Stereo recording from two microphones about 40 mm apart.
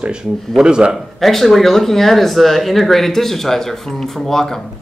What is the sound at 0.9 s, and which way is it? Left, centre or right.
Speech, centre.